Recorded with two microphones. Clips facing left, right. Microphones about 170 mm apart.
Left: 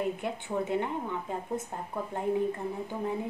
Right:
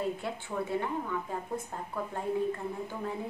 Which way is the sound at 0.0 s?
20° left (ahead or behind).